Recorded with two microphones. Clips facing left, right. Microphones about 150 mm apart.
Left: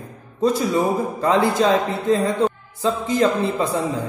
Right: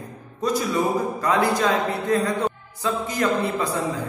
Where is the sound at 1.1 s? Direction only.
25° left (ahead or behind).